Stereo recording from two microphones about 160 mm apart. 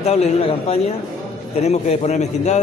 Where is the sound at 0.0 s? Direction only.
40° left (ahead or behind).